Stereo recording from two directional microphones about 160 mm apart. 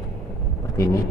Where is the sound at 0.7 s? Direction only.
20° left (ahead or behind).